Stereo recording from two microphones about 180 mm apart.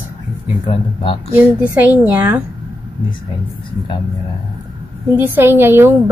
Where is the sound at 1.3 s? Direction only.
5° right (ahead or behind).